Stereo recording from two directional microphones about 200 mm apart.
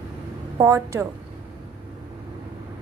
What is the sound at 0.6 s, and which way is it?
Speech, 15° right (ahead or behind).